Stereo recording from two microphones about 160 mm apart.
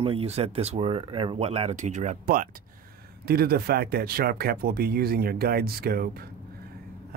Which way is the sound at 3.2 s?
75° right (ahead or behind).